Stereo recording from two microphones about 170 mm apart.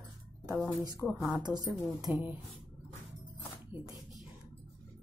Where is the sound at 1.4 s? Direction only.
25° right (ahead or behind).